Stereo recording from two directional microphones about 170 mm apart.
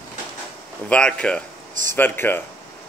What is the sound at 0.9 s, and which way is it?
Speech, 5° left (ahead or behind).